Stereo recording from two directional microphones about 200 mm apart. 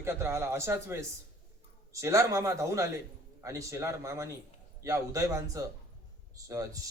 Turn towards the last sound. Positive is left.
turn(degrees=-15)  # may be behind; listen again after turning